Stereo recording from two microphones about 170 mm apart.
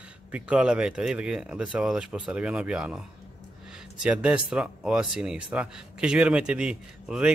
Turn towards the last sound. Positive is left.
turn(degrees=-5)  # may be behind; listen again after turning